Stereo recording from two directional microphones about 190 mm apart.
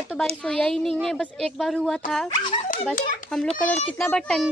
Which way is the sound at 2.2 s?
25° left (ahead or behind).